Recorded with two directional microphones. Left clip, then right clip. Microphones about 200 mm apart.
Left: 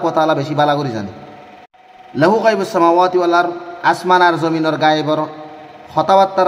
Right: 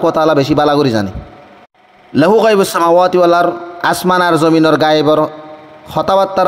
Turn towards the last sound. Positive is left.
turn(degrees=-40)  # may be behind; listen again after turning